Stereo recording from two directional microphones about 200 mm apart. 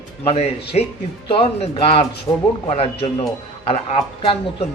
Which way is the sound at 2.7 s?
30° left (ahead or behind).